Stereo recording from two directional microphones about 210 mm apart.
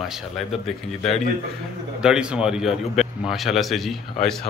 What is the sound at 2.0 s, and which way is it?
A man's voice, 5° right (ahead or behind).